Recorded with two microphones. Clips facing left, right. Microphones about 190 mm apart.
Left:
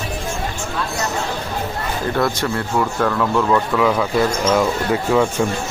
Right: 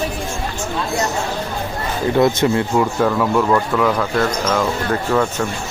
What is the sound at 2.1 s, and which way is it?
Speech, 20° right (ahead or behind).